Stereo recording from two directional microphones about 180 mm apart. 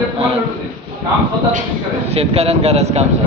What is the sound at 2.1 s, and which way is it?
Speech, 35° right (ahead or behind).